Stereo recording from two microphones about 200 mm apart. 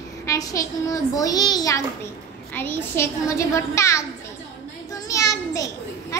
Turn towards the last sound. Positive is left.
turn(degrees=15)  # may be behind; listen again after turning